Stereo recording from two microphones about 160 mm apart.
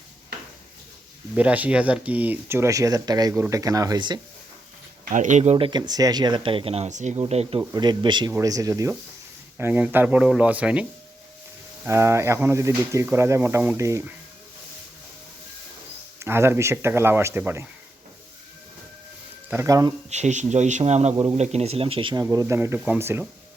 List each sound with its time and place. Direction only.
1.4 s speech: 10° right (ahead or behind); by 4.2 s 25° right (ahead or behind)
5.0 s speech: 50° right (ahead or behind)
7.6 s speech: 25° right (ahead or behind); by 10.8 s 10° right (ahead or behind)
11.9 s speech: 15° right (ahead or behind)
16.2 s speech: 15° right (ahead or behind)
19.5 s speech: 20° right (ahead or behind)
20.1 s speech: 45° right (ahead or behind)
22.2 s speech: 20° right (ahead or behind)